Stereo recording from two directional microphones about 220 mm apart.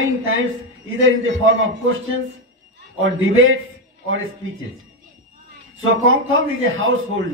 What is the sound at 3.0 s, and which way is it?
Speech, 65° right (ahead or behind).